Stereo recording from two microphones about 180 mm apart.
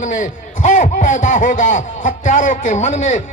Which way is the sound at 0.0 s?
45° left (ahead or behind).